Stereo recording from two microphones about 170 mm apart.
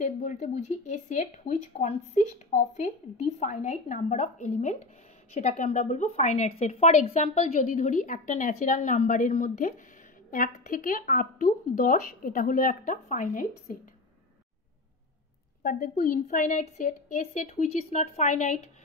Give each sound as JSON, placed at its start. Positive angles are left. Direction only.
{"t": 0.0, "sound": "speech", "side_deg": 45}
{"t": 15.6, "sound": "speech", "side_deg": 55}